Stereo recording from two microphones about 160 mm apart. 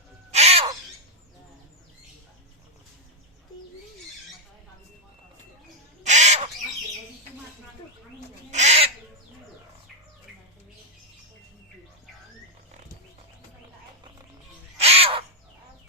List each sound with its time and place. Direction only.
0.3 s owl: 40° right (ahead or behind)
6.0 s bird: 45° right (ahead or behind)
8.4 s owl: 45° right (ahead or behind)
14.8 s crow: 40° right (ahead or behind)